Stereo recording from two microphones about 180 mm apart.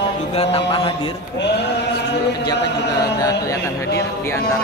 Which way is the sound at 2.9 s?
20° left (ahead or behind).